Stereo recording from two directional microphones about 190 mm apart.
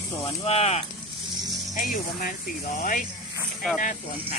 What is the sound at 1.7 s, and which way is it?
Speech, 45° left (ahead or behind).